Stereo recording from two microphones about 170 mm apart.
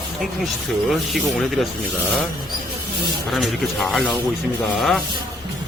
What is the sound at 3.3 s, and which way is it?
Speech, centre (ahead or behind).